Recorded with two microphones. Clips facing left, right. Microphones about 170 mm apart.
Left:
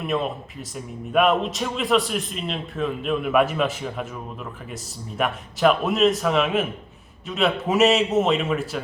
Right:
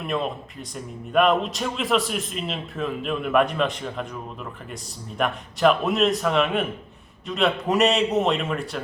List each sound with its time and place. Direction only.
0.0 s a man's voice: centre (ahead or behind)